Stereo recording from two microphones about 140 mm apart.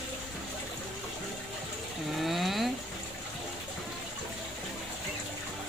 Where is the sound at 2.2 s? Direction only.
Centre (ahead or behind).